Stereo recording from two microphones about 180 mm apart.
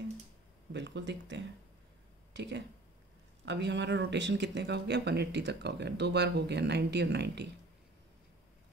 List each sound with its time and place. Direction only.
0.7 s speech: 75° right (ahead or behind)